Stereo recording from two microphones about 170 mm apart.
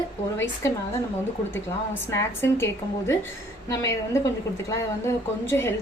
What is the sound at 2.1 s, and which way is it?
A woman's voice, 15° left (ahead or behind).